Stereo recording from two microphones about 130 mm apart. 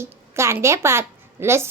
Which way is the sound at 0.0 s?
20° right (ahead or behind).